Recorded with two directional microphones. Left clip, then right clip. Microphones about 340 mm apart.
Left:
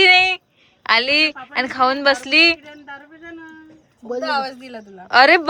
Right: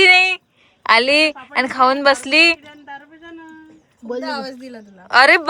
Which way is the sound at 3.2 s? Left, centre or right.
Right.